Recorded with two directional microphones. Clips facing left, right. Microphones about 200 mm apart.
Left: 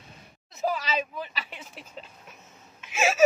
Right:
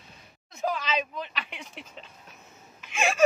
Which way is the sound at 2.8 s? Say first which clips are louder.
Left 2 dB; 5° left (ahead or behind).